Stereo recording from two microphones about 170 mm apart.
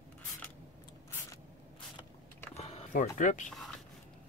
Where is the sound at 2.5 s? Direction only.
40° left (ahead or behind).